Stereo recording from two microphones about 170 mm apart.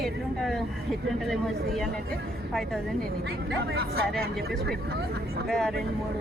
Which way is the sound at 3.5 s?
75° right (ahead or behind).